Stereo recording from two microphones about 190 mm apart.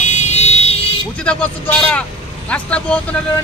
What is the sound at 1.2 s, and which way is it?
A man's voice, 5° left (ahead or behind).